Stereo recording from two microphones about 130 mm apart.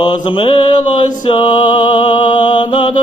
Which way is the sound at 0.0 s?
40° left (ahead or behind).